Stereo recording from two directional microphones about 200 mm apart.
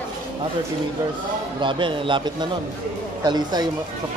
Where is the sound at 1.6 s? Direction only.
25° right (ahead or behind).